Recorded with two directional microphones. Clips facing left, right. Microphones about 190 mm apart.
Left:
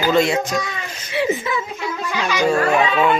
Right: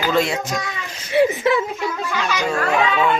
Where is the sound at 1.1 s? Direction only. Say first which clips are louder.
Right 6 dB; 50° right (ahead or behind).